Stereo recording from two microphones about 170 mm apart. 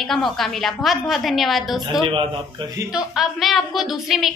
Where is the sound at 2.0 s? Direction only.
30° right (ahead or behind).